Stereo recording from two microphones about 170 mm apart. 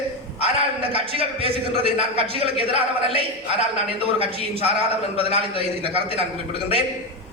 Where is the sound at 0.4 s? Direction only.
35° right (ahead or behind).